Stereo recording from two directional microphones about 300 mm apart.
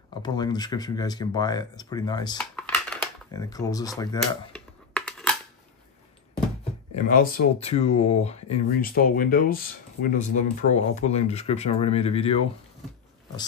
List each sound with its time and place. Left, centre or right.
0.2 s speech: centre
4.6 s a sound: centre
7.1 s speech: left